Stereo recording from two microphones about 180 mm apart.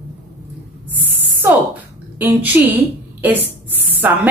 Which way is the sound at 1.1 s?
10° right (ahead or behind).